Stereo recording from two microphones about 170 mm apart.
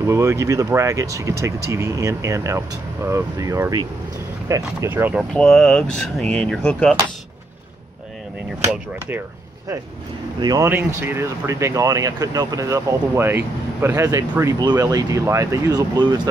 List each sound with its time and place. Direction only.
0.0 s speech: 15° right (ahead or behind)
5.3 s speech: 5° left (ahead or behind)
10.4 s speech: 20° right (ahead or behind)